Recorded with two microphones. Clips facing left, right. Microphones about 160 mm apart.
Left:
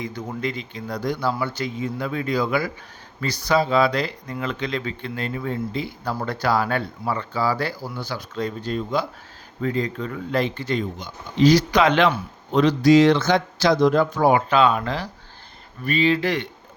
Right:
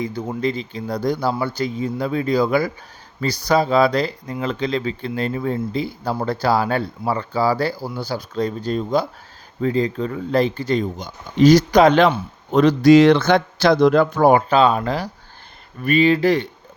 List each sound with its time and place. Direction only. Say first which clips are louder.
0.0 s speech: right 5 dB; 30° right (ahead or behind); by 14.4 s 50° right (ahead or behind)
14.5 s speech: right 3 dB; 35° right (ahead or behind)
15.8 s speech: right 5 dB; 50° right (ahead or behind)